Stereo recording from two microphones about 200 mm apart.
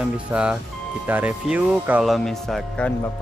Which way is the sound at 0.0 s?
5° right (ahead or behind).